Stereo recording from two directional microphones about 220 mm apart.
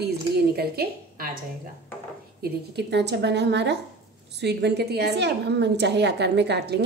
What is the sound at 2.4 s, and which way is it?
A woman's voice, 50° right (ahead or behind).